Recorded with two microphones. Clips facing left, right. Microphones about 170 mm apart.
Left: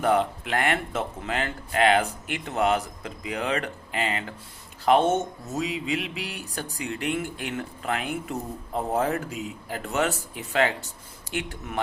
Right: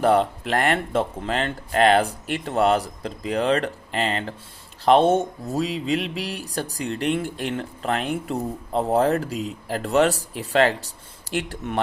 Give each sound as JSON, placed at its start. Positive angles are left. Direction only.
{"t": 0.0, "sound": "speech", "side_deg": -35}